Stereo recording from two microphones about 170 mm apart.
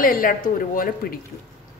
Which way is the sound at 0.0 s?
55° left (ahead or behind).